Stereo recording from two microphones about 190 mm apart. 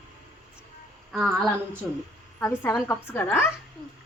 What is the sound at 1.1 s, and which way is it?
Speech, centre (ahead or behind).